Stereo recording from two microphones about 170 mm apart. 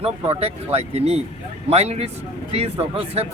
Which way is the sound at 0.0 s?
35° right (ahead or behind).